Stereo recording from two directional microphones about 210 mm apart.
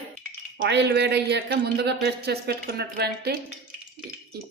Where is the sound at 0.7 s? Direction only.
50° right (ahead or behind).